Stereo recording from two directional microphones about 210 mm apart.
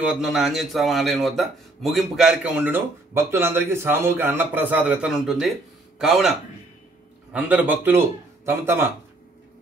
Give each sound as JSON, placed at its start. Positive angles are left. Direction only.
{"t": 0.0, "sound": "a man's voice", "side_deg": -5}
{"t": 7.3, "sound": "a man's voice", "side_deg": -5}